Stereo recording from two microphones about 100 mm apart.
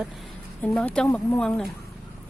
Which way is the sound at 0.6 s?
15° left (ahead or behind).